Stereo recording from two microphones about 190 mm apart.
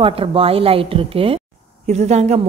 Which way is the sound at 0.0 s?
30° right (ahead or behind).